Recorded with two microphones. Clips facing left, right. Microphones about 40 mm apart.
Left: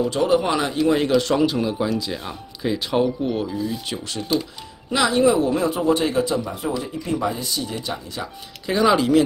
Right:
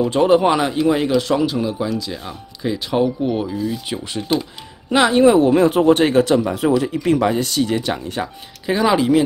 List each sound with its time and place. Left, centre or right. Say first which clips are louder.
0.1 s a man's voice: right 5 dB; right
0.6 s speech: right 3 dB; centre
0.9 s speech: right 1 dB; centre
4.9 s speech: right 5 dB; right
8.6 s speech: right 2 dB; centre